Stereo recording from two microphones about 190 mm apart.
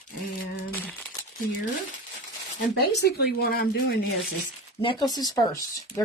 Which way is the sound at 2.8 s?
55° left (ahead or behind).